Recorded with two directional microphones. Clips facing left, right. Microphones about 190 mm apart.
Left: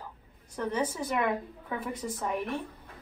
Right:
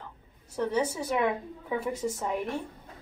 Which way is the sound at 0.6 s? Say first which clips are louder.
Right 3 dB; 10° right (ahead or behind).